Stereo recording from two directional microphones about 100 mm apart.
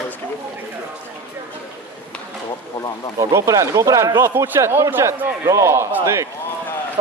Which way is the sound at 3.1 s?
35° right (ahead or behind).